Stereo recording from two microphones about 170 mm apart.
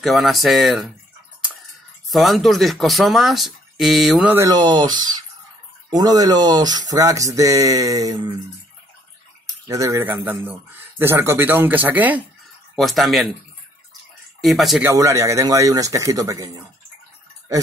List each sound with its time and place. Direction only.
0.0 s speech: centre (ahead or behind)
2.0 s speech: centre (ahead or behind)
4.5 s speech: 25° right (ahead or behind)
9.7 s speech: 20° right (ahead or behind)
12.7 s speech: centre (ahead or behind)
14.4 s speech: centre (ahead or behind)
14.8 s speech: 15° right (ahead or behind)